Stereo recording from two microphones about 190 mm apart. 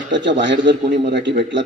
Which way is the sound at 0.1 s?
70° right (ahead or behind).